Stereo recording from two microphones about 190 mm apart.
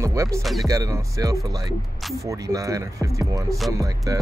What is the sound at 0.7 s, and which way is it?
Speech, 15° right (ahead or behind).